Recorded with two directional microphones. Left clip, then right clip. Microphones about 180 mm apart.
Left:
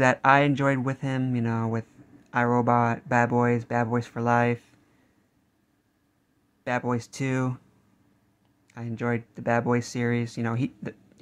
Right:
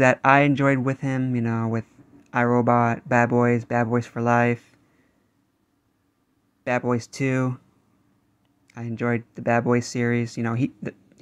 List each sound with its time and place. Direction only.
0.0 s speech: 15° right (ahead or behind)
6.6 s speech: 15° right (ahead or behind)
8.6 s speech: 15° right (ahead or behind)